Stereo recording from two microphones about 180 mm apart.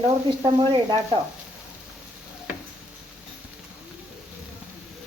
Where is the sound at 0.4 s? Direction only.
25° right (ahead or behind).